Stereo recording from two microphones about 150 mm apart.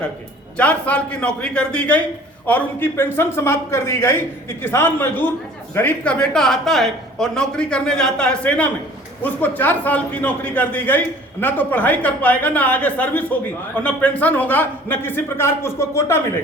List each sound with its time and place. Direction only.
0.5 s a man's voice: 10° left (ahead or behind)